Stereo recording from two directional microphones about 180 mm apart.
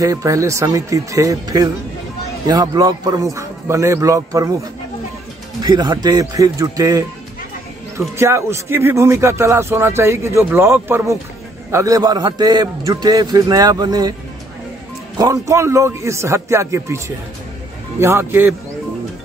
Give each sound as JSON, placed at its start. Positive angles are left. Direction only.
{"t": 0.0, "sound": "a man's voice", "side_deg": -20}
{"t": 5.6, "sound": "a man's voice", "side_deg": -25}
{"t": 8.2, "sound": "a man's voice", "side_deg": -15}
{"t": 15.1, "sound": "speech", "side_deg": -20}